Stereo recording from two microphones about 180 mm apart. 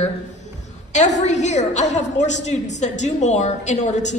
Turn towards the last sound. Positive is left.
turn(degrees=40)  # may be behind; listen again after turning